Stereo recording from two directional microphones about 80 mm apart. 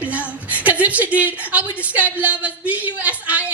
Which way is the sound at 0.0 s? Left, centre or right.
Centre.